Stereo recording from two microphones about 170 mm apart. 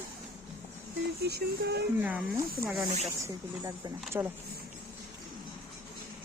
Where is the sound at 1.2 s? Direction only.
70° right (ahead or behind).